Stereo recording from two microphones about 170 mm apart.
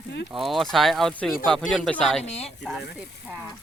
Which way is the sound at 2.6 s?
Centre (ahead or behind).